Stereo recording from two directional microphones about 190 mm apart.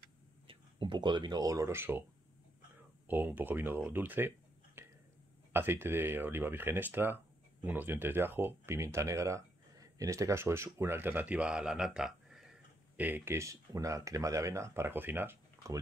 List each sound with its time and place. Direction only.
0.5 s speech: 25° right (ahead or behind)
3.1 s speech: 10° right (ahead or behind)
4.8 s a sound: 15° right (ahead or behind)
5.5 s speech: 10° right (ahead or behind)